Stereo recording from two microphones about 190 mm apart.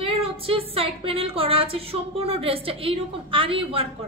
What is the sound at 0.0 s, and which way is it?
A woman's voice, 30° right (ahead or behind).